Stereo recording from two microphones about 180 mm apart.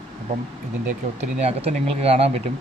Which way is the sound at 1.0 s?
40° right (ahead or behind).